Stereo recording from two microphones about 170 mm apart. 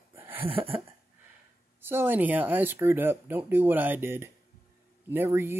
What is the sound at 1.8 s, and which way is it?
Speech, 10° right (ahead or behind).